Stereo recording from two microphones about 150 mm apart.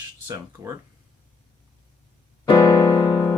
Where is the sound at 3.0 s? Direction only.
35° left (ahead or behind).